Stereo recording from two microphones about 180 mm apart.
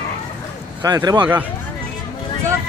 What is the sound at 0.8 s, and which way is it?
Speech, 20° right (ahead or behind).